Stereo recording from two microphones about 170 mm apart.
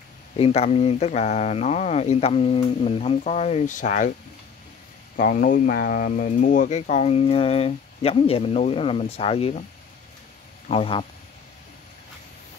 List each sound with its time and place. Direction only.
0.4 s speech: 40° left (ahead or behind)
5.1 s speech: 55° left (ahead or behind); by 9.7 s 35° left (ahead or behind)
10.7 s speech: 35° left (ahead or behind)